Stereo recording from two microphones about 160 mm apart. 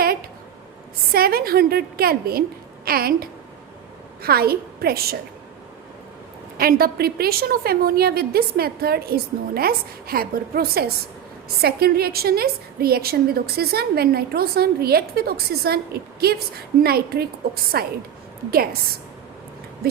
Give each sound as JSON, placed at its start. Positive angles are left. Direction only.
{"t": 0.0, "sound": "a sound", "side_deg": -65}
{"t": 1.1, "sound": "a woman's voice", "side_deg": -70}
{"t": 6.6, "sound": "a woman's voice", "side_deg": -70}